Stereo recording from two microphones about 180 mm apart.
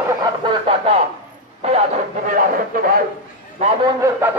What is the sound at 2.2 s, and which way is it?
Speech, 50° right (ahead or behind).